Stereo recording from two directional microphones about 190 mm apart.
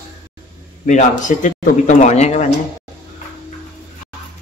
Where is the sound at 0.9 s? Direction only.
40° left (ahead or behind).